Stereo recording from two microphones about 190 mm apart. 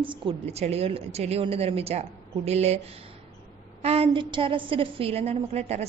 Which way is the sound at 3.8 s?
30° right (ahead or behind).